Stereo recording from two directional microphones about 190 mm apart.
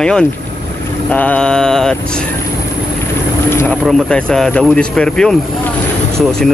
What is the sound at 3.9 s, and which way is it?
Speech, 5° left (ahead or behind).